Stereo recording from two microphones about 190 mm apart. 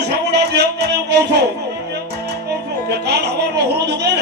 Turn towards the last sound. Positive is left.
turn(degrees=-60)  # may be behind; listen again after turning